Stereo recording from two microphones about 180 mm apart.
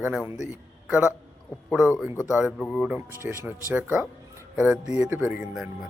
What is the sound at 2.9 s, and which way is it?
Speech, 15° right (ahead or behind).